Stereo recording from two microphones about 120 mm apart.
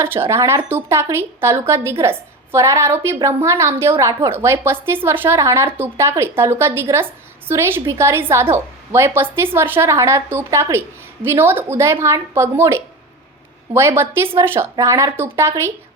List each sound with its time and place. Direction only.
0.0 s a woman's voice: 20° right (ahead or behind)